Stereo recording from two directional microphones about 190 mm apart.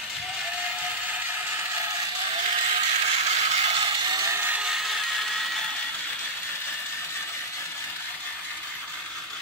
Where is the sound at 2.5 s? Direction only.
35° right (ahead or behind); by 5.5 s centre (ahead or behind).